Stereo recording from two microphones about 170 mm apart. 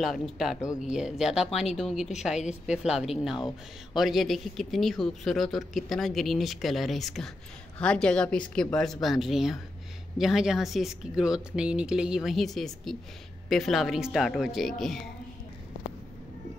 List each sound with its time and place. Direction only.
0.0 s speech: centre (ahead or behind)